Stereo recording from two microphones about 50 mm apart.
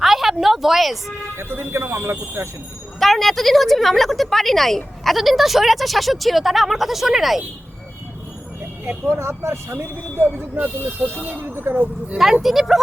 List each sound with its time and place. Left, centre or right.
0.0 s music: centre
1.4 s speech: right
3.0 s a woman's voice: centre
9.0 s speech: right
11.7 s speech: right
12.1 s speech: centre